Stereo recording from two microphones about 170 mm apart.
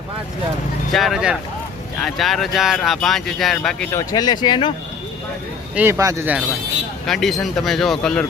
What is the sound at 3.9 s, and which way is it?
Speech, 20° left (ahead or behind).